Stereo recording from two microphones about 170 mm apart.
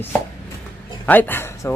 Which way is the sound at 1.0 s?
10° left (ahead or behind).